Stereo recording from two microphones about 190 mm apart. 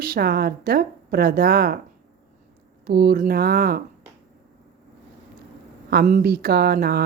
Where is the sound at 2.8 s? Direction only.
55° right (ahead or behind).